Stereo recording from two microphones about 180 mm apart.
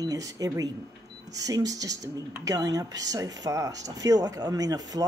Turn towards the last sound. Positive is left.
turn(degrees=-20)  # may be behind; listen again after turning